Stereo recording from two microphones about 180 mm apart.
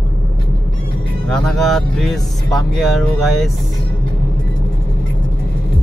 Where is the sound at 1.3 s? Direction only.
Centre (ahead or behind).